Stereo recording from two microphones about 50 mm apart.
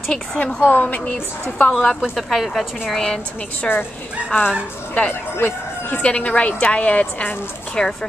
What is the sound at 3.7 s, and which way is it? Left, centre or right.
Speech, centre.